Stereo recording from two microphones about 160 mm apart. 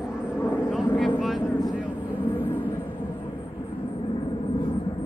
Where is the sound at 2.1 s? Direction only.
10° left (ahead or behind).